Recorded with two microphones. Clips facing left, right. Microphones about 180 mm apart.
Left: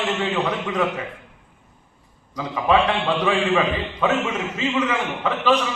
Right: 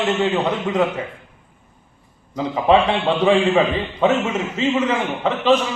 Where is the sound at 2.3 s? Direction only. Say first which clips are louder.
Right 4 dB; 30° right (ahead or behind).